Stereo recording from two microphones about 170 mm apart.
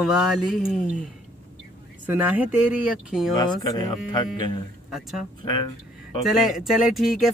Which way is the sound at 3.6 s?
20° left (ahead or behind).